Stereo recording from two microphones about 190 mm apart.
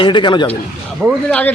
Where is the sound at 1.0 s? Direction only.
5° left (ahead or behind).